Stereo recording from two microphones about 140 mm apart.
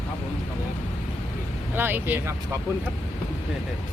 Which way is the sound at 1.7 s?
15° right (ahead or behind).